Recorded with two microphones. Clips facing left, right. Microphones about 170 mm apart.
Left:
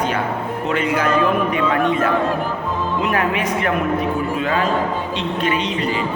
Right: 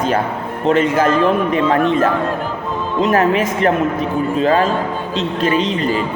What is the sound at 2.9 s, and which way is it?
Speech, 35° right (ahead or behind).